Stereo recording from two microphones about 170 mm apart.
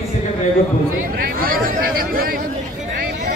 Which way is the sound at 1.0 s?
55° right (ahead or behind).